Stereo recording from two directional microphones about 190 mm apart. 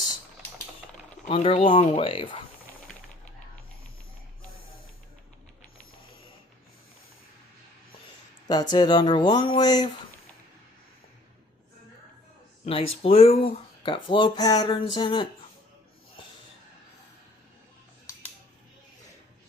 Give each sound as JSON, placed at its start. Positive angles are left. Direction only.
{"t": 1.3, "sound": "speech", "side_deg": 30}
{"t": 8.7, "sound": "speech", "side_deg": 25}
{"t": 12.6, "sound": "speech", "side_deg": 30}